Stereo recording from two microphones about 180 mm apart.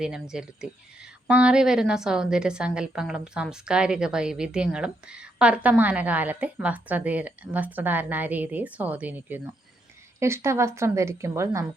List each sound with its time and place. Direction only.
0.0 s a woman's voice: 5° right (ahead or behind)